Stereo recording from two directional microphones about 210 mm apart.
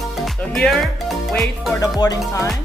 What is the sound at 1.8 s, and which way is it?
Speech, 15° left (ahead or behind).